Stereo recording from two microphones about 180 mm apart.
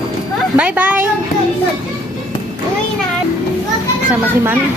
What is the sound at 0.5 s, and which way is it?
Speech, 10° right (ahead or behind).